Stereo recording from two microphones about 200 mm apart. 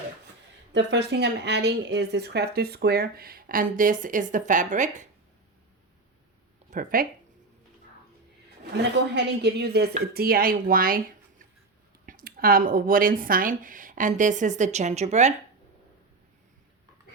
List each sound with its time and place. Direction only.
0.7 s speech: 60° right (ahead or behind); by 5.0 s 40° right (ahead or behind)
6.7 s speech: 40° right (ahead or behind)
9.1 s a woman's voice: 55° right (ahead or behind); by 15.3 s 35° right (ahead or behind)